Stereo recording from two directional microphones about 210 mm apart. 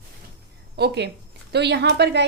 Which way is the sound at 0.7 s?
50° right (ahead or behind).